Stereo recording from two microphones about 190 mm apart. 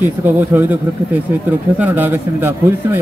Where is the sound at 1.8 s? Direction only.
10° right (ahead or behind).